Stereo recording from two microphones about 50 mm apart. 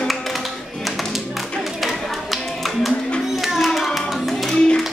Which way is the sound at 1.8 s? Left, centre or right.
Centre.